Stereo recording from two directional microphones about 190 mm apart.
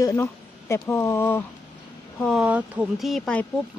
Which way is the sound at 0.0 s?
15° left (ahead or behind).